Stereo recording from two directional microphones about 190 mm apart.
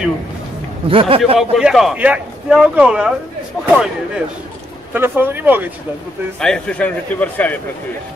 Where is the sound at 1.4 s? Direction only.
Centre (ahead or behind).